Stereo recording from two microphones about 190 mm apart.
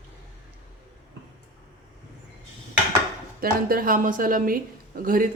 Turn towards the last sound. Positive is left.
turn(degrees=-45)  # may be behind; listen again after turning